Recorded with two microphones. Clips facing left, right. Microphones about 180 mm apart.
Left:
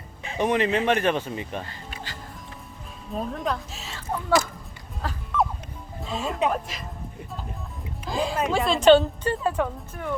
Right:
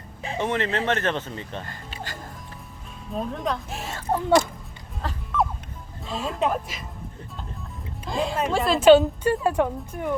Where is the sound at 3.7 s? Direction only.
50° right (ahead or behind).